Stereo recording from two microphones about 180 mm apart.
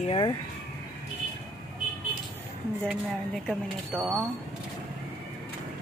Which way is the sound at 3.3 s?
Centre (ahead or behind).